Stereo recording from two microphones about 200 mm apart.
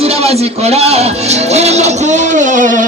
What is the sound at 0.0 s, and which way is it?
Speech, 30° right (ahead or behind).